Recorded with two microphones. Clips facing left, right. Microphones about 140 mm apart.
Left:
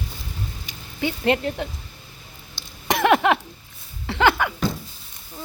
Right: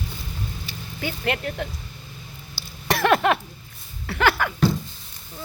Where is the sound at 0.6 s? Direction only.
20° left (ahead or behind).